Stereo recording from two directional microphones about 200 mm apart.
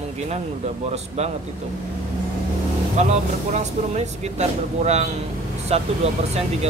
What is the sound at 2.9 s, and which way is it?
Speech, 35° right (ahead or behind).